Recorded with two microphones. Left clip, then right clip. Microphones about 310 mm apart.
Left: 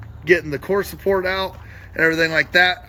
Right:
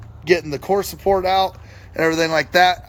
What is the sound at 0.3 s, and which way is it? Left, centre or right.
Speech, centre.